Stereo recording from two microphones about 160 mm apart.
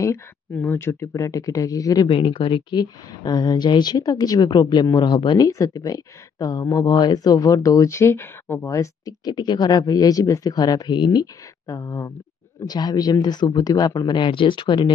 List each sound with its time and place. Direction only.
0.0 s speech: 15° left (ahead or behind)
2.0 s speech: 35° left (ahead or behind)